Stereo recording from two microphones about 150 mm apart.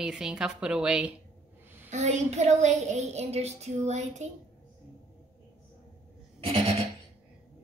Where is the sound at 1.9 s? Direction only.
50° right (ahead or behind).